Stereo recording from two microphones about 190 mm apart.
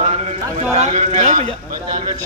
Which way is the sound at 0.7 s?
35° right (ahead or behind).